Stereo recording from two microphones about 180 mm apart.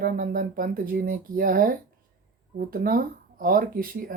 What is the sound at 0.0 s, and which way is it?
Speech, 50° right (ahead or behind).